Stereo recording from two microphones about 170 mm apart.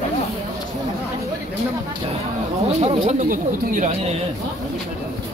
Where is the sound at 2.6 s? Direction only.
40° right (ahead or behind).